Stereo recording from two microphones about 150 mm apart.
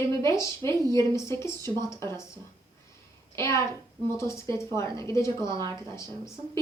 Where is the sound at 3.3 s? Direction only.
20° left (ahead or behind).